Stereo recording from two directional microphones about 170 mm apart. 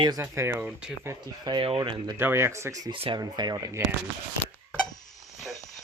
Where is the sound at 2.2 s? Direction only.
15° right (ahead or behind).